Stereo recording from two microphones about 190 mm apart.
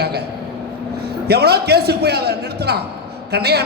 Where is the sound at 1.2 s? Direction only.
60° right (ahead or behind).